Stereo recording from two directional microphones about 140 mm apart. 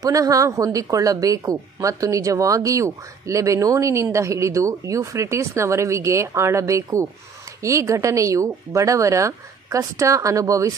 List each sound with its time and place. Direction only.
0.0 s speech: 25° right (ahead or behind)